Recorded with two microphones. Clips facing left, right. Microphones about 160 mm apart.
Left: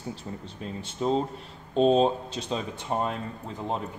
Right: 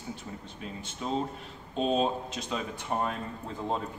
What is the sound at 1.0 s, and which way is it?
Speech, 40° left (ahead or behind).